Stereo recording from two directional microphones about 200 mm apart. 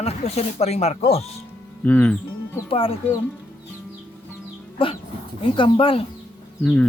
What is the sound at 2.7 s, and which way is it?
Speech, 25° left (ahead or behind).